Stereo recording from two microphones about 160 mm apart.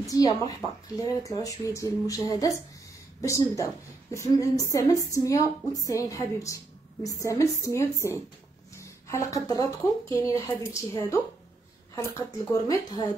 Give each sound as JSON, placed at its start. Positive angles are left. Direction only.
{"t": 0.0, "sound": "a woman's voice", "side_deg": 20}